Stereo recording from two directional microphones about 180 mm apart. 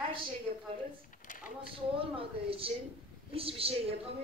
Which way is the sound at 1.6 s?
30° right (ahead or behind).